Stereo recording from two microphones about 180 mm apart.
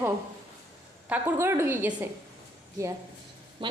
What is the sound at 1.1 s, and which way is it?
Speech, 15° right (ahead or behind).